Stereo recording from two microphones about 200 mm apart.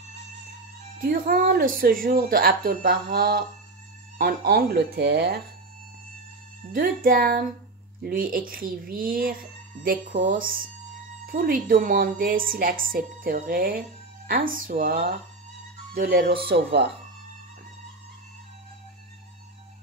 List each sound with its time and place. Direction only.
0.9 s a woman's voice: 45° right (ahead or behind)
6.7 s a woman's voice: 45° right (ahead or behind)